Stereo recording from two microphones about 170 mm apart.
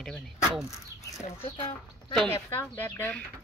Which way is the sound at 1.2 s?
35° left (ahead or behind).